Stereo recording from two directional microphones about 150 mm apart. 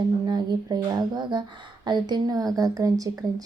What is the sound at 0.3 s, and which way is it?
A woman's voice, 30° right (ahead or behind).